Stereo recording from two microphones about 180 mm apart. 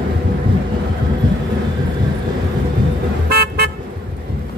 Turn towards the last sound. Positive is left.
turn(degrees=-60)  # may be behind; listen again after turning